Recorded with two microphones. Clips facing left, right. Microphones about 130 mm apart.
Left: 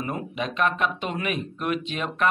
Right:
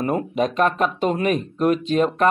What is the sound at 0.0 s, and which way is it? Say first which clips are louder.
Speech: right 8 dB; 40° right (ahead or behind).